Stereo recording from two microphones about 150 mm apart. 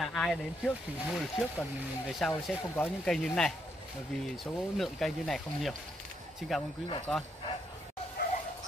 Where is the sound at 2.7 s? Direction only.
15° left (ahead or behind).